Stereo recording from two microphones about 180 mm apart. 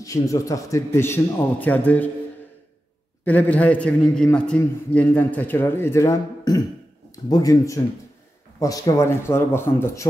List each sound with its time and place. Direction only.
0.0 s a man's voice: 20° left (ahead or behind)
3.3 s a man's voice: 10° left (ahead or behind)